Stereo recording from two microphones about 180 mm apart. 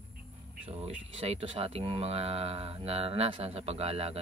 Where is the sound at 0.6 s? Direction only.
35° right (ahead or behind).